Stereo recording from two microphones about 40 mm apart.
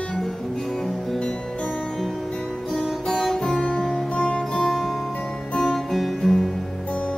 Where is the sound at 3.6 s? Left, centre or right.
Left.